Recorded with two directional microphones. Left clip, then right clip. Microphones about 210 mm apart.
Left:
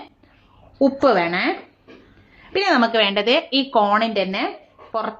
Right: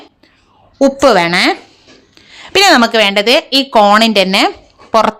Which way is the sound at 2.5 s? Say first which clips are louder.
Right 9 dB; 40° right (ahead or behind).